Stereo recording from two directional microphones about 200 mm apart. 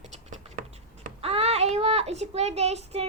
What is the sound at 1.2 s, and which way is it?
Child singing, 30° right (ahead or behind).